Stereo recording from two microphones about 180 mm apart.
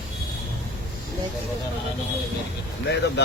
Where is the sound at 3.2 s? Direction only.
70° left (ahead or behind).